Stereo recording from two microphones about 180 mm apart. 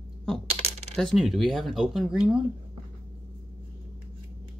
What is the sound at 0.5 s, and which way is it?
Coin, 35° right (ahead or behind).